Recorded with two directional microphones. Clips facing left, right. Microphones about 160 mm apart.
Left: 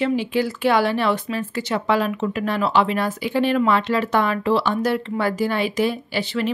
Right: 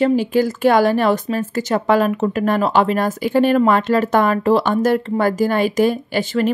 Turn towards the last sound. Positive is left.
turn(degrees=-45)  # may be behind; listen again after turning